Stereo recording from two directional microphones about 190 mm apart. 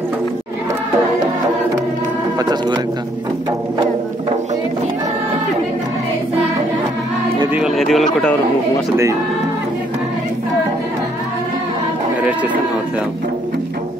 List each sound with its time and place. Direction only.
2.3 s speech: 20° right (ahead or behind)
7.5 s speech: centre (ahead or behind)